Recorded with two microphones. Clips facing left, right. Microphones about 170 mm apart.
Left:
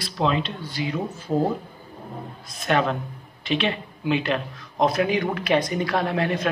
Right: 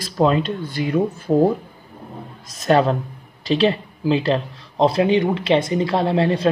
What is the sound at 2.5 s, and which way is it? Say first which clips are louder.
Speech: right 6 dB; 35° right (ahead or behind).